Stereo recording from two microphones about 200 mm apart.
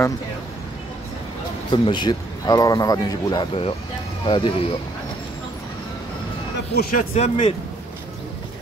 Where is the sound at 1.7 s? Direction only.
25° left (ahead or behind).